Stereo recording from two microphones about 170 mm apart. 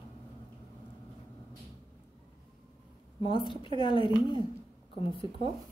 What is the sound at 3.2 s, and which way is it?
A woman's voice, 30° left (ahead or behind).